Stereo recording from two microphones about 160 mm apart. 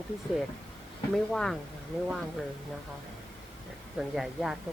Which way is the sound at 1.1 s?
5° left (ahead or behind).